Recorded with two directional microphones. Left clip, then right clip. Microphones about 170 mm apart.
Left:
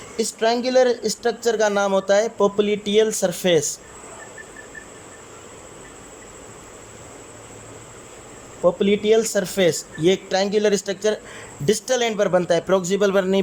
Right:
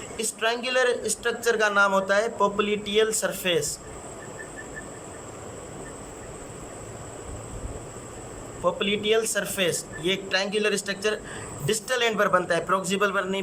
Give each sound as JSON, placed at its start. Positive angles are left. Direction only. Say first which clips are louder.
{"t": 0.2, "sound": "speech", "louder": "left 6 dB", "side_deg": 30}
{"t": 8.6, "sound": "speech", "louder": "left 6 dB", "side_deg": 35}